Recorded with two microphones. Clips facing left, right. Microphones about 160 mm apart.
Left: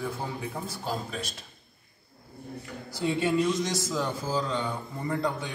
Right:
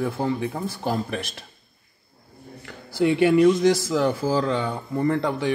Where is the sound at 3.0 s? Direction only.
65° right (ahead or behind).